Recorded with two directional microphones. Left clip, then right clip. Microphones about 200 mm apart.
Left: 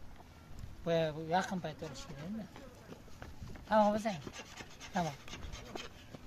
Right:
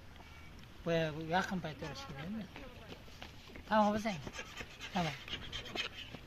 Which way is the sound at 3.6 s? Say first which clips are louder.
Left 2 dB; 15° left (ahead or behind).